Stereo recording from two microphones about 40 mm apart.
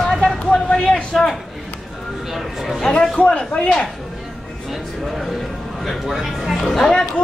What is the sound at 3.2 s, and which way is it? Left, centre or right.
Speech, left.